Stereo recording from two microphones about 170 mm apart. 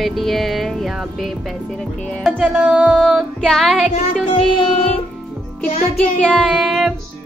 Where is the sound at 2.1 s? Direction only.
5° left (ahead or behind).